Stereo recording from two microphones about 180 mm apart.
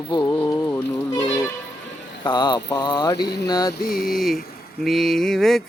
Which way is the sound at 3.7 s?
55° left (ahead or behind).